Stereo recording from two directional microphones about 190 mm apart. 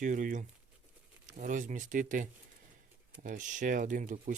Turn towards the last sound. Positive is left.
turn(degrees=-40)  # may be behind; listen again after turning